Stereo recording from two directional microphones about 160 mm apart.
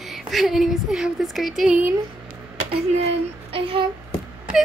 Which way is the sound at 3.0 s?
35° right (ahead or behind).